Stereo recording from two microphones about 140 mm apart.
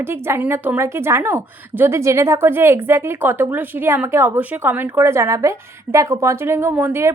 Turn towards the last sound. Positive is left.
turn(degrees=-15)  # may be behind; listen again after turning